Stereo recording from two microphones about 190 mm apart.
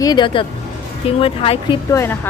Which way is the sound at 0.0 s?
20° left (ahead or behind).